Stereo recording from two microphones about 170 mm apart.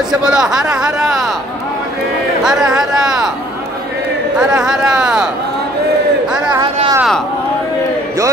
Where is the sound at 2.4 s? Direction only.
5° right (ahead or behind).